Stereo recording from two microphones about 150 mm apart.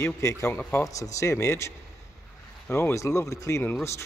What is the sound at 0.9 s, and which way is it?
Speech, 20° left (ahead or behind).